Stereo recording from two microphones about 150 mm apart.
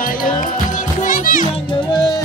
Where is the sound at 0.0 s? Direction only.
65° left (ahead or behind).